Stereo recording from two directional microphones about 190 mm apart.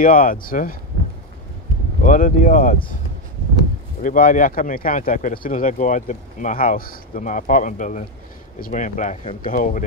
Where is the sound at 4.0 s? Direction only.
45° left (ahead or behind).